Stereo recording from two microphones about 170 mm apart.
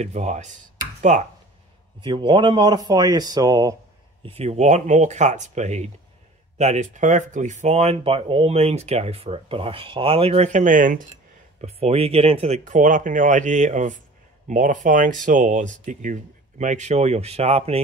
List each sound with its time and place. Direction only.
0.0 s speech: 40° right (ahead or behind)
2.0 s speech: 30° right (ahead or behind)
4.2 s speech: 35° right (ahead or behind)
11.6 s speech: 35° right (ahead or behind)